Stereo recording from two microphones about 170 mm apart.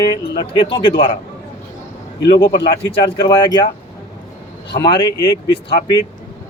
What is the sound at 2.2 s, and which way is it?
Speech, 25° left (ahead or behind).